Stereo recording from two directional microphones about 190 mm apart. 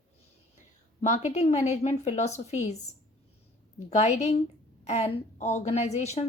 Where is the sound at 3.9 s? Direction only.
35° left (ahead or behind).